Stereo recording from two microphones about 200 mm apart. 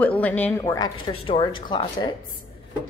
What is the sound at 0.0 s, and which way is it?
A woman's voice, 5° left (ahead or behind).